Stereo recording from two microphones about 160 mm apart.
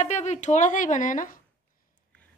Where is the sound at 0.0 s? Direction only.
45° left (ahead or behind).